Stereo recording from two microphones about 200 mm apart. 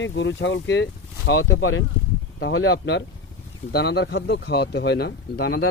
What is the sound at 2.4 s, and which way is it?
Speech, 65° left (ahead or behind).